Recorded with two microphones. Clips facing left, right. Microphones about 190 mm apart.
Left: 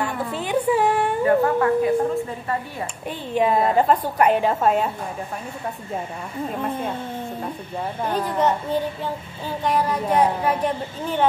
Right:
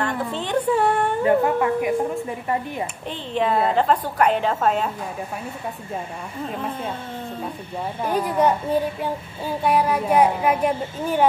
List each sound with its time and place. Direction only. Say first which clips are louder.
0.0 s a sound: right 1 dB; 10° left (ahead or behind)
1.2 s a woman's voice: left 1 dB; 15° right (ahead or behind)
3.1 s a woman's voice: left 3 dB; 10° left (ahead or behind)
6.5 s speech: left 3 dB; centre (ahead or behind)
8.0 s a woman's voice: right 2 dB; 10° right (ahead or behind)